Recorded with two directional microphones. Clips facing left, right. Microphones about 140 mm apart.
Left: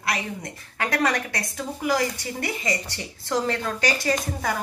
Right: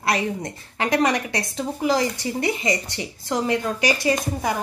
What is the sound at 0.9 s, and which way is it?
Speech, 20° right (ahead or behind).